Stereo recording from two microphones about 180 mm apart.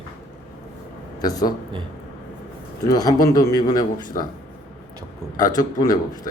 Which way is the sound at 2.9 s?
20° left (ahead or behind).